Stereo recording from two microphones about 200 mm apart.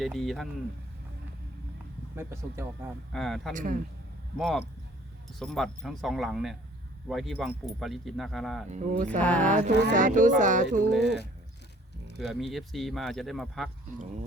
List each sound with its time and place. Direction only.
0.0 s speech: centre (ahead or behind)
2.1 s speech: 10° right (ahead or behind)
3.1 s speech: centre (ahead or behind)
3.5 s speech: 40° right (ahead or behind)
4.4 s speech: centre (ahead or behind)
8.7 s speech: 40° right (ahead or behind)
9.2 s speech: 5° left (ahead or behind)
9.9 s speech: 40° right (ahead or behind)
10.8 s speech: centre (ahead or behind)
12.2 s speech: centre (ahead or behind)